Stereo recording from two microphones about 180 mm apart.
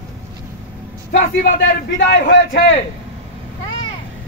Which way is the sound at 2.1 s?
75° left (ahead or behind).